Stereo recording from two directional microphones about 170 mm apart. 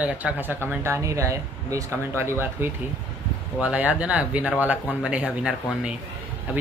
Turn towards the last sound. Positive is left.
turn(degrees=-5)  # may be behind; listen again after turning